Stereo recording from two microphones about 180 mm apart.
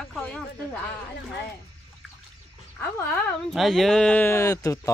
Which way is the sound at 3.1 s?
5° left (ahead or behind).